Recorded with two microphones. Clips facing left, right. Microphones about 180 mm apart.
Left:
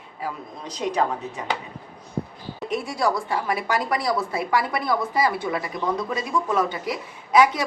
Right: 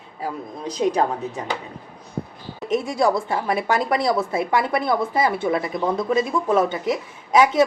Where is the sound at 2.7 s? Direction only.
20° right (ahead or behind).